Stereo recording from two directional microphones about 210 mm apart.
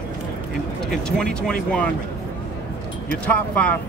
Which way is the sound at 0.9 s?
5° left (ahead or behind).